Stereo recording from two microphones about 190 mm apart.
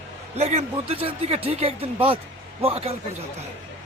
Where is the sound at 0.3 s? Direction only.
35° right (ahead or behind).